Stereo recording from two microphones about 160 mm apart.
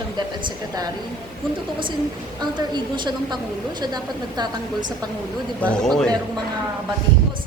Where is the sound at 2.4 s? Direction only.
25° right (ahead or behind).